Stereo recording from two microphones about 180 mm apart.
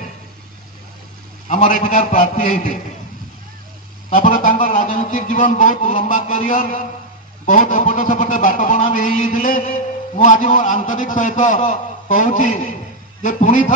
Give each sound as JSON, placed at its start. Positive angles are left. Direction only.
{"t": 1.5, "sound": "a man's voice", "side_deg": 45}
{"t": 4.1, "sound": "a man's voice", "side_deg": 45}